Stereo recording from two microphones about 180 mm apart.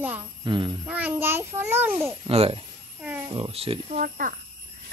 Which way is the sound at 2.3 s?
35° right (ahead or behind).